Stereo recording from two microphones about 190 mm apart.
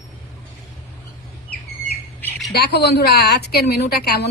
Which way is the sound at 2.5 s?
60° left (ahead or behind).